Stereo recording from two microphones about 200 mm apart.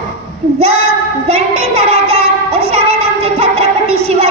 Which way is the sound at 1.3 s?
30° right (ahead or behind).